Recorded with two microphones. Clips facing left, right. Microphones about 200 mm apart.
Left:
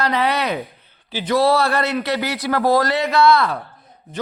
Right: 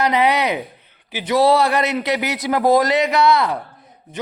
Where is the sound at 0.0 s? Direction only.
15° right (ahead or behind).